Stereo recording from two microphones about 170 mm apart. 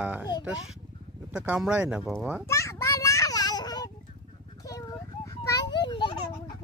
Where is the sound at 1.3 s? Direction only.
5° right (ahead or behind).